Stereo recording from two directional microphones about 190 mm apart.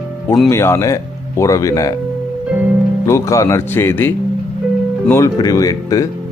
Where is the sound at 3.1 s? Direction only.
15° left (ahead or behind).